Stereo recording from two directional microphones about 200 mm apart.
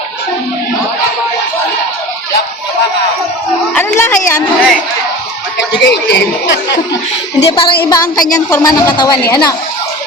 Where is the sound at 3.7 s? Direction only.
10° left (ahead or behind).